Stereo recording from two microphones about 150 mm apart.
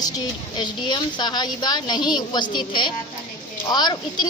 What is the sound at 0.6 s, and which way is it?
A woman's voice, 30° left (ahead or behind).